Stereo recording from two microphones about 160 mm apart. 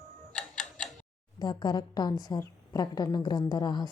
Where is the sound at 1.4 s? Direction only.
25° left (ahead or behind).